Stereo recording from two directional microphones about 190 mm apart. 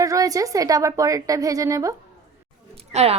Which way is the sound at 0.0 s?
15° right (ahead or behind).